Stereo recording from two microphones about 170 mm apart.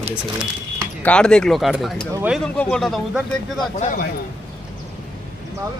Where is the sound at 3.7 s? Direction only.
50° left (ahead or behind).